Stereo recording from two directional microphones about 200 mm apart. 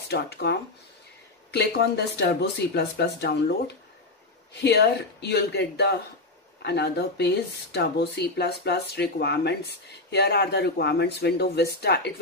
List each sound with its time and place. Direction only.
0.1 s speech: 55° left (ahead or behind)